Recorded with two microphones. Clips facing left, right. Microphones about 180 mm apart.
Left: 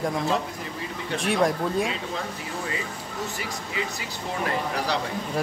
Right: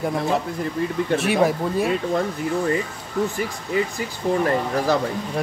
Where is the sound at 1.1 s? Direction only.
5° right (ahead or behind).